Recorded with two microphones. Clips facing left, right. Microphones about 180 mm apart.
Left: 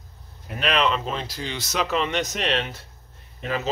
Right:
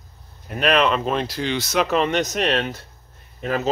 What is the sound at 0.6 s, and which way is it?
Speech, 50° right (ahead or behind).